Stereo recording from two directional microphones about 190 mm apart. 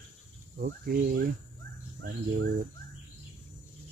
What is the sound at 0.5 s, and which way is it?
Speech, 50° right (ahead or behind).